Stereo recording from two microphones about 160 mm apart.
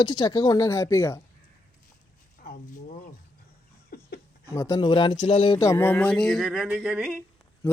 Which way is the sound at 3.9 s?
70° left (ahead or behind).